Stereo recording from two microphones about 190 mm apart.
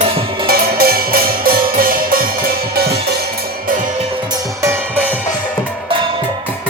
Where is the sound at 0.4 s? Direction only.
55° right (ahead or behind).